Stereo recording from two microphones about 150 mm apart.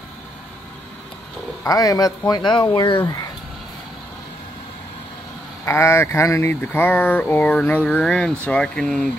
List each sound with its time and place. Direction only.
1.6 s speech: 20° left (ahead or behind)
5.7 s speech: 15° left (ahead or behind)